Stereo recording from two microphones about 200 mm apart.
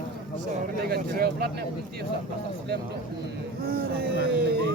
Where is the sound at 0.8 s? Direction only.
50° right (ahead or behind).